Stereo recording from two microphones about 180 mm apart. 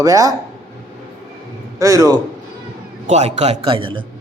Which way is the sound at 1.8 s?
20° right (ahead or behind).